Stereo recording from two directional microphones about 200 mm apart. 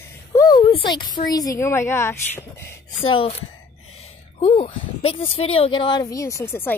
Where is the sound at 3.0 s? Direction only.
25° left (ahead or behind).